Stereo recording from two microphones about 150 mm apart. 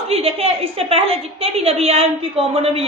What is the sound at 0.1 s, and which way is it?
A woman's voice, 45° right (ahead or behind).